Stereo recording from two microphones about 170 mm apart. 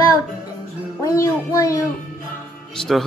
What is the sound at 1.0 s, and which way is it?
Music, 20° left (ahead or behind).